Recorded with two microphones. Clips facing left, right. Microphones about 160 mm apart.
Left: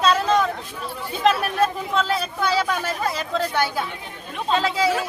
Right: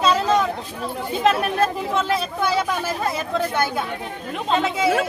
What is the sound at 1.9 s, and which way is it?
Speech, 20° right (ahead or behind).